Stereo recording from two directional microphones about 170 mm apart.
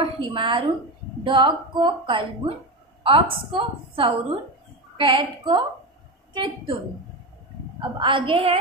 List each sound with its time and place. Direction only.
0.3 s a woman's voice: 30° right (ahead or behind)
3.0 s a sound: 30° right (ahead or behind)
3.5 s a woman's voice: 30° right (ahead or behind)
8.0 s a woman's voice: 30° right (ahead or behind)